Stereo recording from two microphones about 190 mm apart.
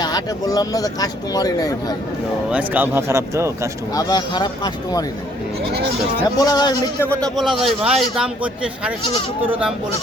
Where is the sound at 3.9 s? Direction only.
20° left (ahead or behind).